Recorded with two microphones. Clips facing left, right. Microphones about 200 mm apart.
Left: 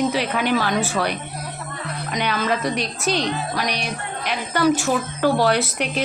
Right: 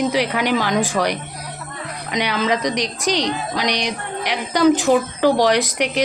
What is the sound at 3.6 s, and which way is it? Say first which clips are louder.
Music: right 4 dB; 75° right (ahead or behind).